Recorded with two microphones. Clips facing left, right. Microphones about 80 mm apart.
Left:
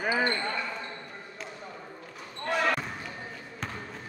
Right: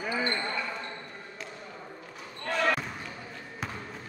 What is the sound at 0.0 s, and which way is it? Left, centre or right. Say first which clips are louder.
Basketball bounce: left 4 dB; left.